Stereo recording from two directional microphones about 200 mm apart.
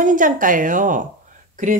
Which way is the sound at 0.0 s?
40° right (ahead or behind).